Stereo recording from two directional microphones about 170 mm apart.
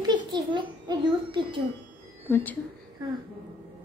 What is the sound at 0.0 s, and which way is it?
A child's voice, 25° right (ahead or behind).